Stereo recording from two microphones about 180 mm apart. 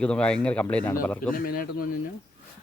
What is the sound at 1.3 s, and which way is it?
Speech, 50° left (ahead or behind).